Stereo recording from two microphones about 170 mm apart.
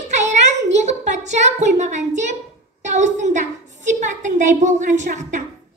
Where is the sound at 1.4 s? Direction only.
45° right (ahead or behind).